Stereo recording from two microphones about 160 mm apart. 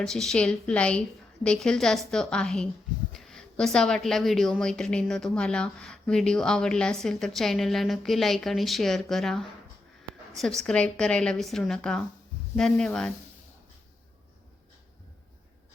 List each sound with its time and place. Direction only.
0.0 s a woman's voice: 5° left (ahead or behind)